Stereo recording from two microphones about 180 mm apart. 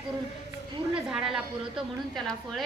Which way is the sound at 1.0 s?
5° right (ahead or behind).